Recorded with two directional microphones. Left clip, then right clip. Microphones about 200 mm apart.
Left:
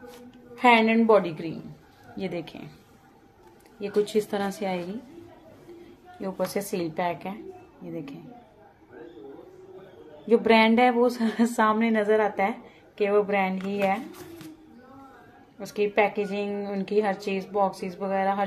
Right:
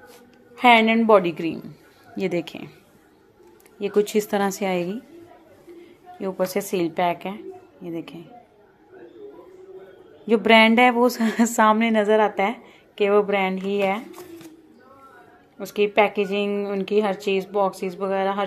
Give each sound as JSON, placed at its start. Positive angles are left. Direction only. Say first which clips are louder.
{"t": 0.6, "sound": "a woman's voice", "louder": "right 4 dB", "side_deg": -35}
{"t": 3.8, "sound": "a woman's voice", "louder": "right 4 dB", "side_deg": -40}
{"t": 6.2, "sound": "a woman's voice", "louder": "right 5 dB", "side_deg": -35}
{"t": 10.2, "sound": "a woman's voice", "louder": "right 4 dB", "side_deg": -40}
{"t": 15.6, "sound": "a woman's voice", "louder": "right 4 dB", "side_deg": -35}